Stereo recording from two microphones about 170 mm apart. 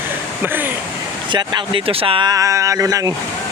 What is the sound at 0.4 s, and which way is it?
Speech, 10° right (ahead or behind).